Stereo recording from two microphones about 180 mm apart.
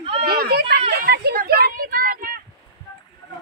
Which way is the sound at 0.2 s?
60° right (ahead or behind).